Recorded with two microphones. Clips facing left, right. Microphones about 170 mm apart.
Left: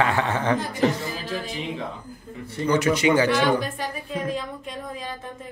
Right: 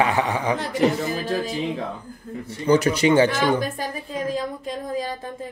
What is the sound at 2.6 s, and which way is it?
A man's voice, 35° right (ahead or behind).